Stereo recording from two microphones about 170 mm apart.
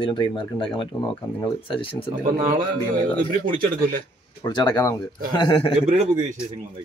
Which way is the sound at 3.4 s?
55° right (ahead or behind).